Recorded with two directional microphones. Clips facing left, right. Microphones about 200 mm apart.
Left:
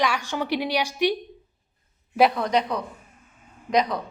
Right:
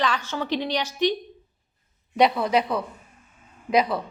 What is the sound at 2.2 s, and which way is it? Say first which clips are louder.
Speech: even; 5° right (ahead or behind).